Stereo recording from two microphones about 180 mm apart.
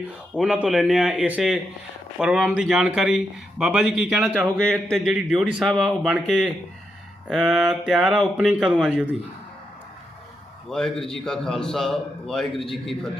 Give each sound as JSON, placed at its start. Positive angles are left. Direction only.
{"t": 0.3, "sound": "speech", "side_deg": -5}
{"t": 10.7, "sound": "speech", "side_deg": 5}